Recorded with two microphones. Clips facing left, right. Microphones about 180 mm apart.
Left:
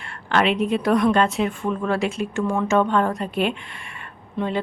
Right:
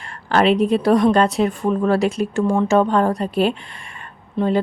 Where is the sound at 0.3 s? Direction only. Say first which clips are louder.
Right 5 dB; 35° right (ahead or behind).